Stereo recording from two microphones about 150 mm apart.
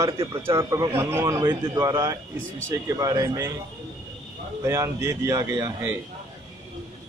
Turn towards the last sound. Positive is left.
turn(degrees=-15)  # may be behind; listen again after turning